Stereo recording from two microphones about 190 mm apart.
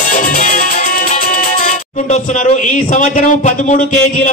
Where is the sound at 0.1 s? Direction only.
45° left (ahead or behind).